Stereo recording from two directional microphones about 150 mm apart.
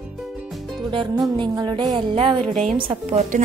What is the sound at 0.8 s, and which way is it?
A woman's voice, 30° right (ahead or behind).